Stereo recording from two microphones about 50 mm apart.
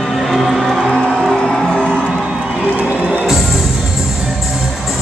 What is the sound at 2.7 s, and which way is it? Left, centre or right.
Music, right.